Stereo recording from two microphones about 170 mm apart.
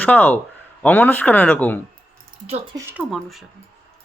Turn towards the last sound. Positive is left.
turn(degrees=0)  # may be behind; listen again after turning